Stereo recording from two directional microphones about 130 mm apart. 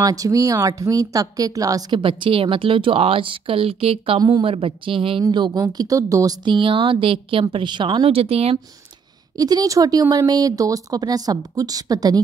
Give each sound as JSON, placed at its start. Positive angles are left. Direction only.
{"t": 0.0, "sound": "speech", "side_deg": -25}
{"t": 4.2, "sound": "speech", "side_deg": -35}
{"t": 9.4, "sound": "speech", "side_deg": -30}